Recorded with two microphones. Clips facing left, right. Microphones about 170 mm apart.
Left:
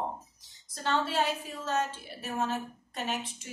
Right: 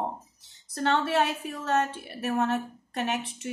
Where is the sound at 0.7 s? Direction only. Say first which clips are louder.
Right 5 dB; 60° right (ahead or behind).